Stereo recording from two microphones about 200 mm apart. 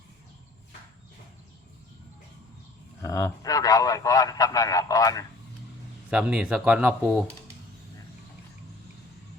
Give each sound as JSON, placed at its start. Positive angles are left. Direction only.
{"t": 3.0, "sound": "a man's voice", "side_deg": 15}
{"t": 6.1, "sound": "speech", "side_deg": -5}